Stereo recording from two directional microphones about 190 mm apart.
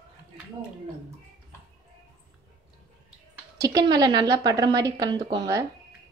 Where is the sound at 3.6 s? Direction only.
20° right (ahead or behind).